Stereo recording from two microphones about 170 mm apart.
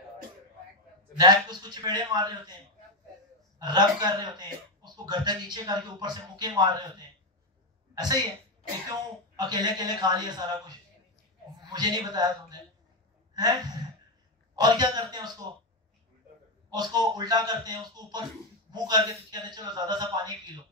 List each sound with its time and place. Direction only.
1.1 s speech: 25° right (ahead or behind)
3.5 s speech: 25° right (ahead or behind)
11.7 s speech: 25° right (ahead or behind)
16.7 s speech: 25° right (ahead or behind)